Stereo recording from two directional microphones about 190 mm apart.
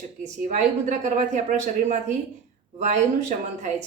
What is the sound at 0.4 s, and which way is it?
A woman's voice, 40° right (ahead or behind).